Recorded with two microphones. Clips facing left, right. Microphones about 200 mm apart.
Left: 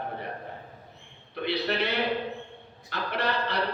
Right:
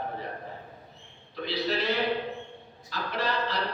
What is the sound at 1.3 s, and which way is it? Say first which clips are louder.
Speech: left 1 dB; 60° left (ahead or behind).